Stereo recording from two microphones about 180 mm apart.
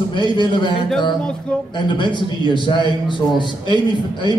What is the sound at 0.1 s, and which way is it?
A man's voice, 25° left (ahead or behind).